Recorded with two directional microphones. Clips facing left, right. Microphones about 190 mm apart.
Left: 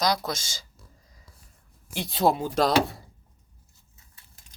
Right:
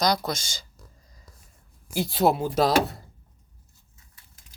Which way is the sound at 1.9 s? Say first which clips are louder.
Right 2 dB; 5° right (ahead or behind).